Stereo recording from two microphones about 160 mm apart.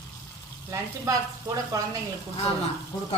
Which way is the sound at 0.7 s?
20° right (ahead or behind).